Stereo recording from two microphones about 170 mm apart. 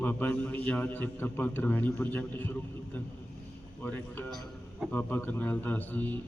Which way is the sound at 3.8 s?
10° left (ahead or behind).